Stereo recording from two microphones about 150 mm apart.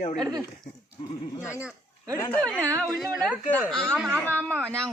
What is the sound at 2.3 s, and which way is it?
A man's voice, 5° left (ahead or behind).